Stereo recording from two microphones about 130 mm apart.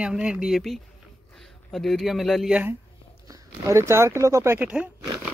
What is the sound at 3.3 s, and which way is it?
Speech, 25° right (ahead or behind).